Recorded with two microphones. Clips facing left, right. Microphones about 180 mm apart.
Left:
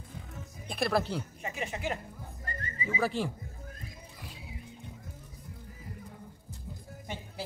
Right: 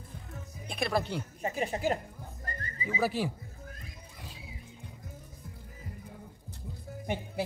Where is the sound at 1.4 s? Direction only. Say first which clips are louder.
Right 5 dB; 35° right (ahead or behind).